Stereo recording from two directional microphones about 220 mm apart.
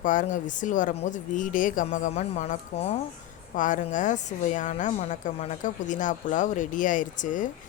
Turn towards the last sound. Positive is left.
turn(degrees=35)  # may be behind; listen again after turning